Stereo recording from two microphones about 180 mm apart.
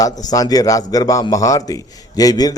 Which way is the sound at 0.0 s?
20° left (ahead or behind).